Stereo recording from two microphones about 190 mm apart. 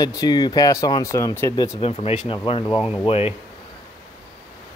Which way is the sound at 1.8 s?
30° left (ahead or behind).